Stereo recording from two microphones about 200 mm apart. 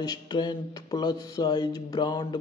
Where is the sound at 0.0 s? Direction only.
20° left (ahead or behind).